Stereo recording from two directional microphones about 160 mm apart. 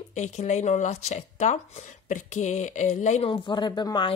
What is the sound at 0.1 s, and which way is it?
Speech, 45° left (ahead or behind).